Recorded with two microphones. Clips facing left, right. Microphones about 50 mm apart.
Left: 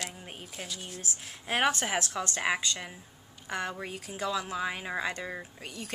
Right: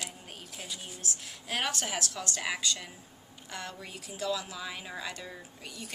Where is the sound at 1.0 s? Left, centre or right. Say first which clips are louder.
Left 1 dB; left.